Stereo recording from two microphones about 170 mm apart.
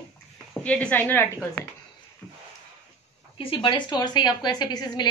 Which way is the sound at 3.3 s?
30° left (ahead or behind).